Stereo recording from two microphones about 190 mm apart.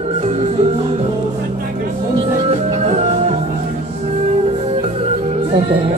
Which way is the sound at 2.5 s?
35° right (ahead or behind).